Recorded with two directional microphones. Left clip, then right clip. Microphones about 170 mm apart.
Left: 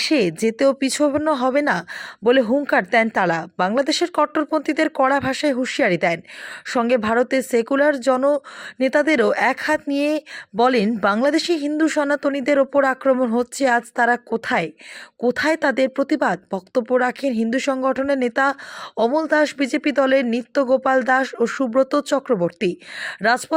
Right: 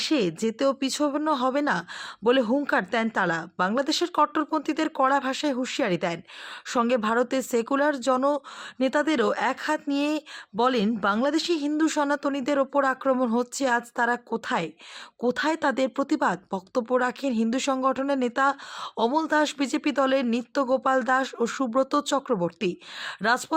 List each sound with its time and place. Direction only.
0.0 s speech: 20° left (ahead or behind)